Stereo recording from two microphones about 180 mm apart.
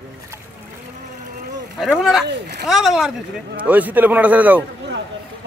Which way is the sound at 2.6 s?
Centre (ahead or behind).